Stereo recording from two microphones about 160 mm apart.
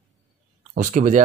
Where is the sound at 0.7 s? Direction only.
50° right (ahead or behind).